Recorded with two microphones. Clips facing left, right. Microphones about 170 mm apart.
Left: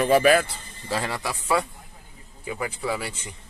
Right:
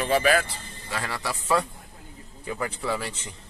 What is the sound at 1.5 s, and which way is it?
A man's voice, 10° left (ahead or behind).